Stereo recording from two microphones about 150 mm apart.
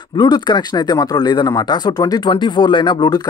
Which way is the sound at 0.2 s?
30° left (ahead or behind).